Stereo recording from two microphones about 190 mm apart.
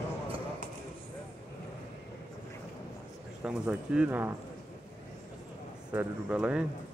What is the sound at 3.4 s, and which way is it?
Speech, 5° right (ahead or behind).